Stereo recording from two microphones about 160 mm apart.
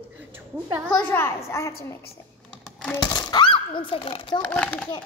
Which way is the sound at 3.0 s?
25° left (ahead or behind).